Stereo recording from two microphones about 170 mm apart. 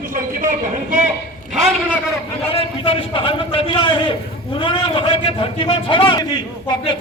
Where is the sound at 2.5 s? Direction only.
35° left (ahead or behind).